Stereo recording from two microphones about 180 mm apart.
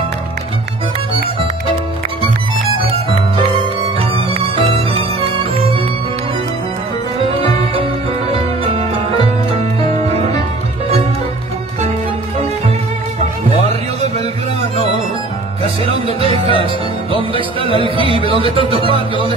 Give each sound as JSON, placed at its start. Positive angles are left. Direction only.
{"t": 4.9, "sound": "music", "side_deg": -30}
{"t": 7.7, "sound": "music", "side_deg": -30}
{"t": 16.2, "sound": "music", "side_deg": -30}
{"t": 17.8, "sound": "music", "side_deg": -30}